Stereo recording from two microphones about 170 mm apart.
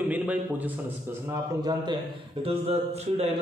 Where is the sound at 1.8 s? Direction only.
30° right (ahead or behind).